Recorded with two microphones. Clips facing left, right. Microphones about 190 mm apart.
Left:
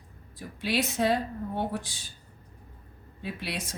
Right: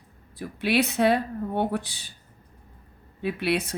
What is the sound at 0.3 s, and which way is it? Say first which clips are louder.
A woman's voice: right 6 dB; 65° right (ahead or behind).